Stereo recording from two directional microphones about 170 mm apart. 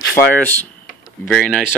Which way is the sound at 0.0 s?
70° left (ahead or behind).